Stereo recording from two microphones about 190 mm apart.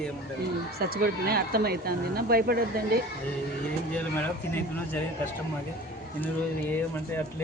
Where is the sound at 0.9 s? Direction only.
55° right (ahead or behind).